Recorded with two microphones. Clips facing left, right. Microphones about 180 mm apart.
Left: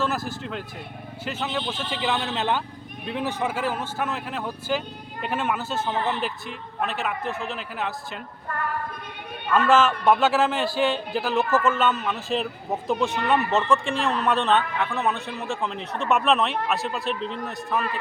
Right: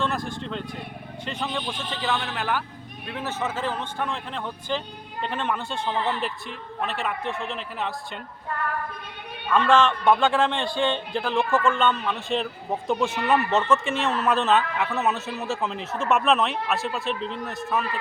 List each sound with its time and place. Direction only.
0.0 s speech: 5° left (ahead or behind)
2.0 s speech: 20° left (ahead or behind); by 7.9 s centre (ahead or behind)
9.6 s speech: 5° left (ahead or behind)